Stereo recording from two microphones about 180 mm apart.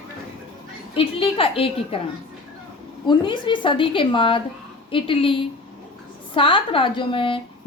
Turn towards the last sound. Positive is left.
turn(degrees=30)  # may be behind; listen again after turning